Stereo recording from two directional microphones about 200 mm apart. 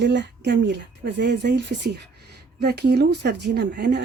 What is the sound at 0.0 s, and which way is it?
Speech, 60° right (ahead or behind).